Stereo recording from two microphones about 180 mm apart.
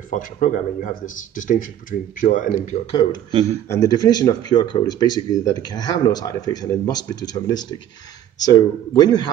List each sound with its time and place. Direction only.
0.1 s speech: 45° left (ahead or behind)
3.6 s speech: 15° left (ahead or behind)